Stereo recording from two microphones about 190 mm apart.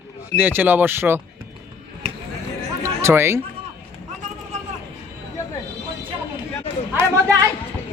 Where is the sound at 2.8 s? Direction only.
15° right (ahead or behind).